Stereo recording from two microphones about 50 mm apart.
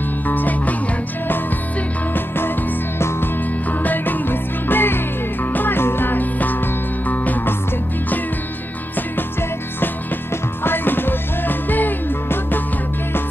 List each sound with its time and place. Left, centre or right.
0.3 s music: left
2.1 s music: left
3.8 s music: left
10.6 s music: left